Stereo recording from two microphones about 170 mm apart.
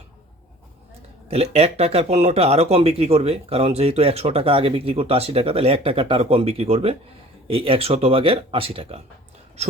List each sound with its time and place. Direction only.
1.3 s speech: 35° right (ahead or behind)